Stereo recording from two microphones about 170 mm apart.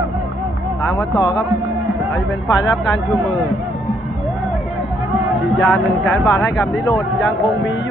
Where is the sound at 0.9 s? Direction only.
25° left (ahead or behind).